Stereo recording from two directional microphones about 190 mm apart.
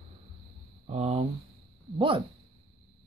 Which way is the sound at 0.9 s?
35° right (ahead or behind).